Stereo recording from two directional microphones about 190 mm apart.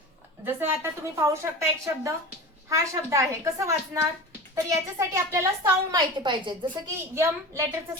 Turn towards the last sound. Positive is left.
turn(degrees=-15)  # may be behind; listen again after turning